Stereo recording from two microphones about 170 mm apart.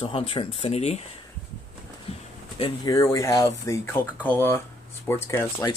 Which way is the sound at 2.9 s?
20° left (ahead or behind).